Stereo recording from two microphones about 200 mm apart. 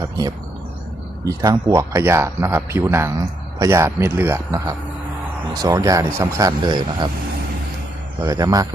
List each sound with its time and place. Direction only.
0.0 s a sound: 20° right (ahead or behind)
1.2 s speech: 15° right (ahead or behind)
8.2 s speech: 15° right (ahead or behind)